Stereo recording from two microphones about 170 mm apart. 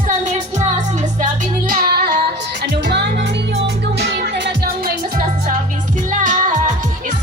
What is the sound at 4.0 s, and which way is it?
Music, 75° right (ahead or behind).